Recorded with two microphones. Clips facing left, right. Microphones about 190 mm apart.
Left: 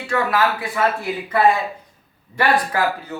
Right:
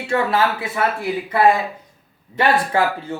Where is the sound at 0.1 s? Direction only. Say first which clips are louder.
Right 1 dB; 25° right (ahead or behind).